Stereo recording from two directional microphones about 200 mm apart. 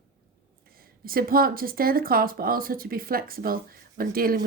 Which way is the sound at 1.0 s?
45° right (ahead or behind).